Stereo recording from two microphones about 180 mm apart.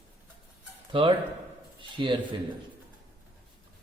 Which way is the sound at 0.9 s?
30° right (ahead or behind).